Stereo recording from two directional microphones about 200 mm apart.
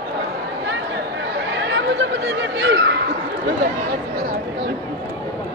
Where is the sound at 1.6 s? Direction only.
65° right (ahead or behind).